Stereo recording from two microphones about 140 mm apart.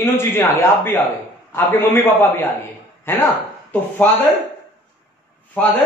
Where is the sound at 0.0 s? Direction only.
15° left (ahead or behind).